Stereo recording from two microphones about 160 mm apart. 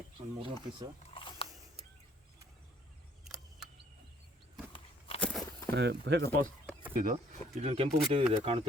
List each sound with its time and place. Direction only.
0.3 s speech: 30° right (ahead or behind)
1.1 s a sound: 35° left (ahead or behind)
4.7 s walk: 35° left (ahead or behind)
5.2 s walk: centre (ahead or behind)
5.7 s speech: 90° right
6.9 s speech: 60° right (ahead or behind)
7.6 s speech: 40° right (ahead or behind)